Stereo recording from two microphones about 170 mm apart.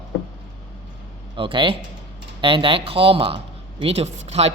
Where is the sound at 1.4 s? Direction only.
30° right (ahead or behind).